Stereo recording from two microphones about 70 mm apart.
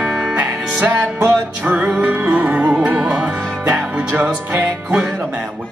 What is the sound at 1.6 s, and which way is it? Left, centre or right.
Music, right.